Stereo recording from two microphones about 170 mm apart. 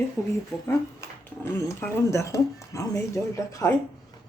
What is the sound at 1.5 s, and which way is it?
Speech, 15° left (ahead or behind).